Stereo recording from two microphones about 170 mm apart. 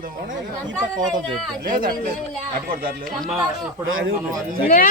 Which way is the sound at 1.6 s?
60° right (ahead or behind).